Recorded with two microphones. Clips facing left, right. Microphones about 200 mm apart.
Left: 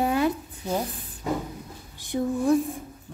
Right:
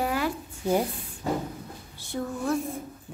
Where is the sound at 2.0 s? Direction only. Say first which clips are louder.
Left 6 dB; 15° left (ahead or behind).